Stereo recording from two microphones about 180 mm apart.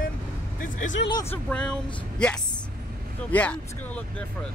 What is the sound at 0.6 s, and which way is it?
Speech, 45° left (ahead or behind).